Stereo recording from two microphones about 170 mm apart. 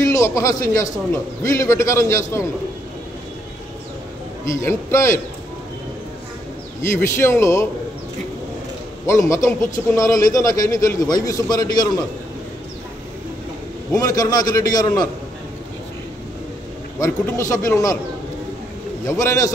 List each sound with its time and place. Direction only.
0.0 s a man's voice: 20° left (ahead or behind)
4.5 s a man's voice: 15° left (ahead or behind)
6.8 s a man's voice: 15° left (ahead or behind)
9.0 s a man's voice: 15° left (ahead or behind)
13.9 s a man's voice: 20° left (ahead or behind)
17.0 s a man's voice: 15° left (ahead or behind)
19.0 s a man's voice: 15° left (ahead or behind)